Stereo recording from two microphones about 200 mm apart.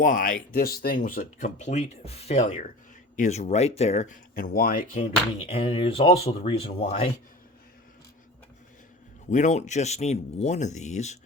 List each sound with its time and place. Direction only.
0.0 s speech: 40° left (ahead or behind)
5.4 s speech: 30° left (ahead or behind)
9.3 s speech: 35° left (ahead or behind)